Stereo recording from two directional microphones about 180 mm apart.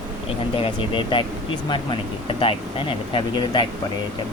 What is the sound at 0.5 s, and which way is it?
Speech, 30° left (ahead or behind).